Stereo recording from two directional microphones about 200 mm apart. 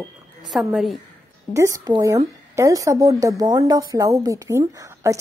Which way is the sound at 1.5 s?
15° right (ahead or behind).